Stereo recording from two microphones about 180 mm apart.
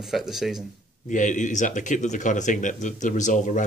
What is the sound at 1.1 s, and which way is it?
Speech, 45° left (ahead or behind).